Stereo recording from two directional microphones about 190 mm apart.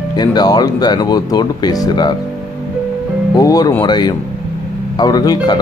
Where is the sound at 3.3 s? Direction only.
20° left (ahead or behind).